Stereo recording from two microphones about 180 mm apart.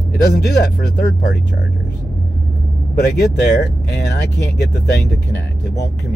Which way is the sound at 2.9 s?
65° left (ahead or behind).